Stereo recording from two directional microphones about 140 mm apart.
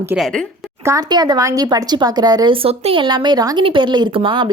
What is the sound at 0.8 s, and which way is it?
A woman's voice, 25° right (ahead or behind).